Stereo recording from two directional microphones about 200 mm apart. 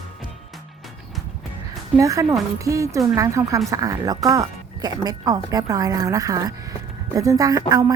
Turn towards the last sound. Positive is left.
turn(degrees=-15)  # may be behind; listen again after turning